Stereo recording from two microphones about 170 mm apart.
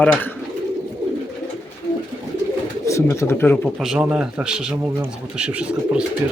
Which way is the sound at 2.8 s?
15° left (ahead or behind).